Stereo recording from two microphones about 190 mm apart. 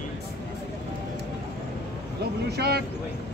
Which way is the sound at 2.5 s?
55° right (ahead or behind).